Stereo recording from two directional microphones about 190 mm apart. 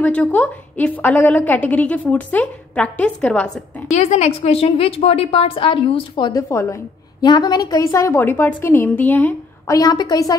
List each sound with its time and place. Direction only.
0.0 s a woman's voice: 10° left (ahead or behind)
3.9 s a woman's voice: 35° left (ahead or behind); by 9.8 s 10° left (ahead or behind)
9.8 s a woman's voice: 20° left (ahead or behind)